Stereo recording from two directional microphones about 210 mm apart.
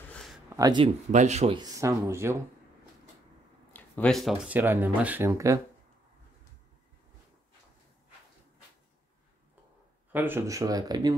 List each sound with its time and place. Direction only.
0.1 s a sound: centre (ahead or behind)
0.5 s speech: 15° right (ahead or behind)
1.1 s speech: 35° right (ahead or behind)
1.6 s speech: 15° right (ahead or behind)
3.7 s speech: 5° left (ahead or behind); by 5.6 s 15° right (ahead or behind)
10.1 s speech: 10° right (ahead or behind)